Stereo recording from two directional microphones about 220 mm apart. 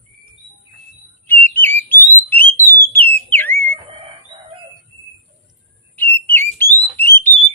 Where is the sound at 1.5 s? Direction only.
10° left (ahead or behind).